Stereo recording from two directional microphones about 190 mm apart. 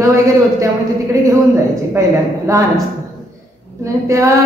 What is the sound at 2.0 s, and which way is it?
Speech, 15° right (ahead or behind).